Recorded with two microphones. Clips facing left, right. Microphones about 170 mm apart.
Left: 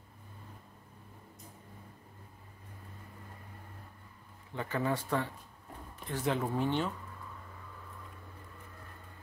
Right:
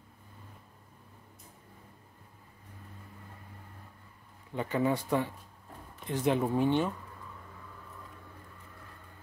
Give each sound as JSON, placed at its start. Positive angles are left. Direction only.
{"t": 4.6, "sound": "speech", "side_deg": -20}